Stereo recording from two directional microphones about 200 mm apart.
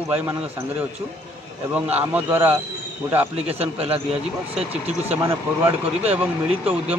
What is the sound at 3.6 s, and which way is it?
Speech, 30° right (ahead or behind).